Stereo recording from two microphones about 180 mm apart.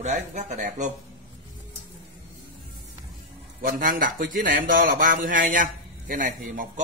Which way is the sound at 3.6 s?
50° right (ahead or behind).